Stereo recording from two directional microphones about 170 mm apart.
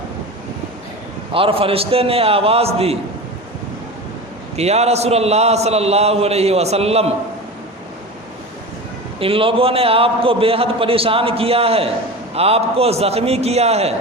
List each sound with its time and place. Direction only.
1.3 s a man's voice: 35° right (ahead or behind)
4.5 s a man's voice: 40° right (ahead or behind)
9.1 s a man's voice: 35° right (ahead or behind)